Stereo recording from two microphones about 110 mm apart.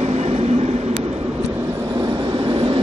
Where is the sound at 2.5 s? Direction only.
55° right (ahead or behind).